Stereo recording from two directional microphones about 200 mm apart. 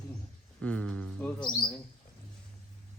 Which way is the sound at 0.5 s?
5° left (ahead or behind).